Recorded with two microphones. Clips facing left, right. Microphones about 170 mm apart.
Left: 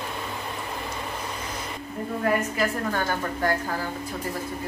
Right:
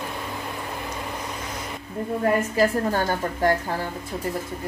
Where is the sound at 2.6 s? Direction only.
30° right (ahead or behind).